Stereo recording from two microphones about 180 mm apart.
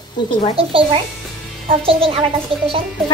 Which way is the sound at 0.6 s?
30° right (ahead or behind).